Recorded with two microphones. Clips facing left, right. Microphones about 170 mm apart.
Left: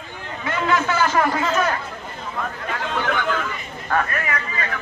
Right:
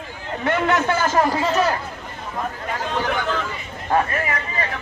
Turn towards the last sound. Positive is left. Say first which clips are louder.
# right 1 dB
turn(degrees=-30)  # may be behind; listen again after turning